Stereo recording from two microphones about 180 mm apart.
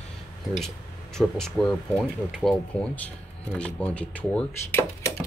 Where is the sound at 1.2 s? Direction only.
5° left (ahead or behind).